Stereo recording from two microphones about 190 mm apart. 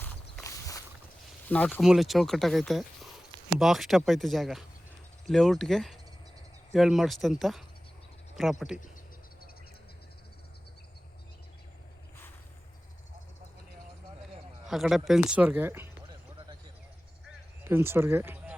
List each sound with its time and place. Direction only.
0.4 s walk: 15° left (ahead or behind)
1.5 s speech: 10° left (ahead or behind)
14.7 s speech: centre (ahead or behind)
17.6 s speech: 10° right (ahead or behind)